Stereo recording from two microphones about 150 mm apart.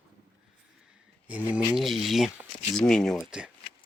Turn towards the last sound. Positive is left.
turn(degrees=5)  # may be behind; listen again after turning